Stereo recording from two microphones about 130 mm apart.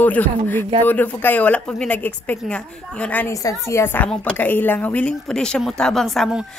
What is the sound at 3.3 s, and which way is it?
A woman's voice, 25° left (ahead or behind).